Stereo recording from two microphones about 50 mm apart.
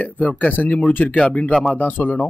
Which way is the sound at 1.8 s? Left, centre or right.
Left.